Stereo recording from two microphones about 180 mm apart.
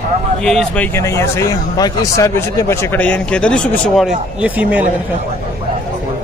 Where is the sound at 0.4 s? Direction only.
5° left (ahead or behind).